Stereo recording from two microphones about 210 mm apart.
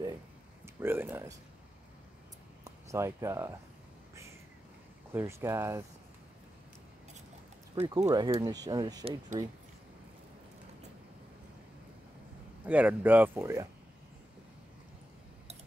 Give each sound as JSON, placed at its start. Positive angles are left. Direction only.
{"t": 0.7, "sound": "speech", "side_deg": -10}
{"t": 2.6, "sound": "speech", "side_deg": -15}
{"t": 5.1, "sound": "speech", "side_deg": -10}
{"t": 7.7, "sound": "speech", "side_deg": -20}
{"t": 12.6, "sound": "speech", "side_deg": -10}